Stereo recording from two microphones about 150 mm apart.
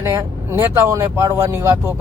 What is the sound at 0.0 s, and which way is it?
Speech, 20° right (ahead or behind).